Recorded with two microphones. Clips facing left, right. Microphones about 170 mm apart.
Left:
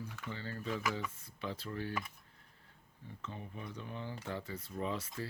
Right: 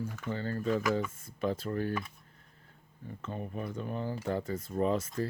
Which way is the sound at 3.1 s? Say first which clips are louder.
Right 8 dB; 50° right (ahead or behind).